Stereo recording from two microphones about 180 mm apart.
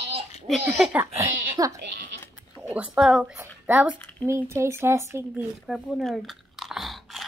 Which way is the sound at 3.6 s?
5° right (ahead or behind).